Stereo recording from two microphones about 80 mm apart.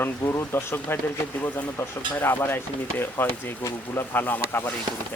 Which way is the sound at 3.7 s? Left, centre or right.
Left.